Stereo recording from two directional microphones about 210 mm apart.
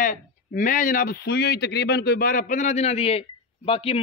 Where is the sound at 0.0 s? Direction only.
40° left (ahead or behind).